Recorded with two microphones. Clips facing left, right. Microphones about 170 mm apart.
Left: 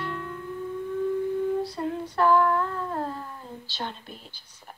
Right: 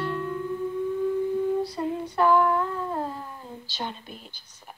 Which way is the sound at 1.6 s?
Centre (ahead or behind).